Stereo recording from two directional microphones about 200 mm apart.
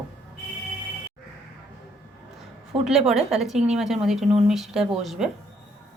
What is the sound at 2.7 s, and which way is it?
Speech, 30° right (ahead or behind).